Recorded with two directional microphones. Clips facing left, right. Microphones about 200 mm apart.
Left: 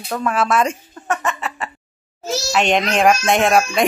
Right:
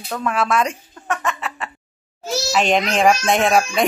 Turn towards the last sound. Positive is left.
turn(degrees=0)  # may be behind; listen again after turning